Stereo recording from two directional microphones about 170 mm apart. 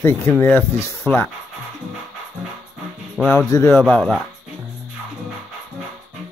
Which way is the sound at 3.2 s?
5° left (ahead or behind).